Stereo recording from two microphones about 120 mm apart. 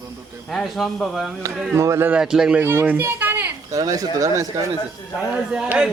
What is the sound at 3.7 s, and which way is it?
Speech, 30° right (ahead or behind).